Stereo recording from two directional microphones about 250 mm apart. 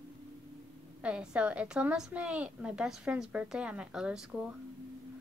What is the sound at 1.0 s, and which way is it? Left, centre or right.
A woman's voice, centre.